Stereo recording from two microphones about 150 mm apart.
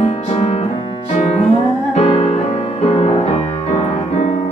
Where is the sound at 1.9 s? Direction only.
45° left (ahead or behind).